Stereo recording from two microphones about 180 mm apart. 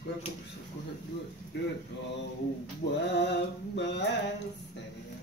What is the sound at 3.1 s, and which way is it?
Music, 70° left (ahead or behind).